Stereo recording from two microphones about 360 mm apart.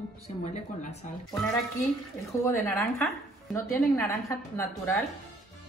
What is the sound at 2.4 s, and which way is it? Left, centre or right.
A woman's voice, centre.